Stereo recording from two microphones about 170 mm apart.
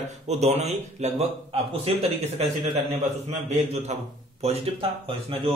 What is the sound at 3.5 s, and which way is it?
A man's voice, 40° right (ahead or behind).